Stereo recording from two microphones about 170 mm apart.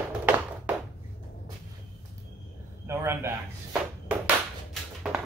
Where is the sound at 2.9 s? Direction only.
15° right (ahead or behind).